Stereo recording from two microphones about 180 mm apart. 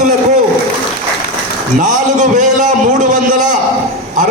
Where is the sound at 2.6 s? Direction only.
45° right (ahead or behind).